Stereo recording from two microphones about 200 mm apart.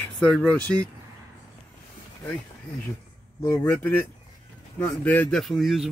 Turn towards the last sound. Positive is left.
turn(degrees=0)  # may be behind; listen again after turning